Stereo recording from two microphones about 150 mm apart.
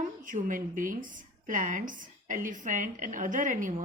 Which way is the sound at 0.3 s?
60° right (ahead or behind).